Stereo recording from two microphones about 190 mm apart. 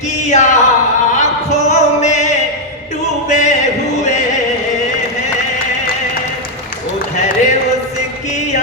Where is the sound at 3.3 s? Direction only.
40° left (ahead or behind).